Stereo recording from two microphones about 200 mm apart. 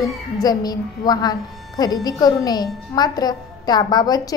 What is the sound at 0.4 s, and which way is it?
A woman's voice, 20° left (ahead or behind).